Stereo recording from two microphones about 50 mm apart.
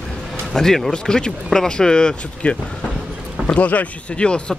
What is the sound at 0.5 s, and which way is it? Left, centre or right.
Speech, centre.